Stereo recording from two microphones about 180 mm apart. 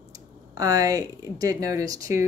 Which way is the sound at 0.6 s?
20° right (ahead or behind).